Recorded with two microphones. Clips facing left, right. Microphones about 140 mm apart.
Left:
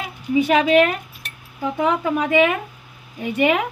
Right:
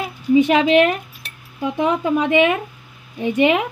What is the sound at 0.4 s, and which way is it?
A woman's voice, 25° right (ahead or behind).